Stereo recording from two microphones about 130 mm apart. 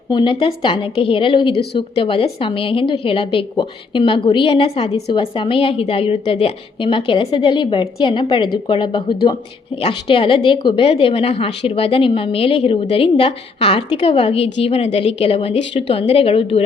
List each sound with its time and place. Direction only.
0.1 s a woman's voice: 35° left (ahead or behind)